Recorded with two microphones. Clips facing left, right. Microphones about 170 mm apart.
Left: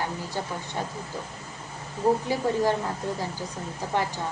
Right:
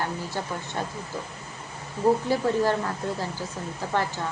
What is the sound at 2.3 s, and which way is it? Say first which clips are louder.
Speech: right 2 dB; 15° left (ahead or behind).